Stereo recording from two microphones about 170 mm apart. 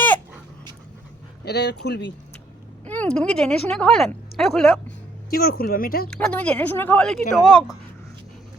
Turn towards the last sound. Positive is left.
turn(degrees=0)  # may be behind; listen again after turning